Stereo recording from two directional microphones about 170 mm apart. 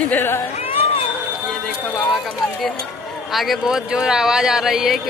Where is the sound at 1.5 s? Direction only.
5° left (ahead or behind).